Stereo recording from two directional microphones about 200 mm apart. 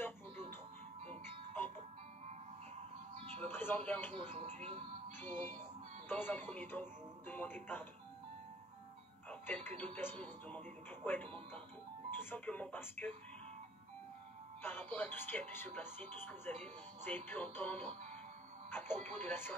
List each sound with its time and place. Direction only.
3.3 s speech: 10° left (ahead or behind)
4.4 s speech: 35° right (ahead or behind)
6.0 s speech: 10° left (ahead or behind)
9.3 s music: 10° left (ahead or behind)
9.9 s speech: 10° left (ahead or behind)
14.6 s speech: 10° left (ahead or behind)